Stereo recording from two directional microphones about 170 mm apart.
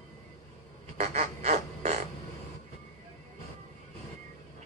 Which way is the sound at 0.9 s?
40° right (ahead or behind).